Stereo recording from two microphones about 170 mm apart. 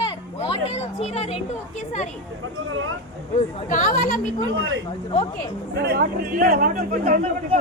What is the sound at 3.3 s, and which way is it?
Speech, 50° left (ahead or behind).